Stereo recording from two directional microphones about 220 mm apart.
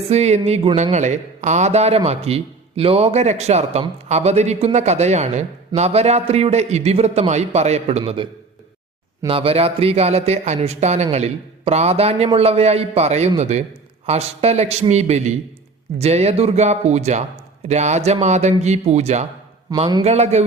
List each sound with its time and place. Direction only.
0.1 s a man's voice: 30° right (ahead or behind)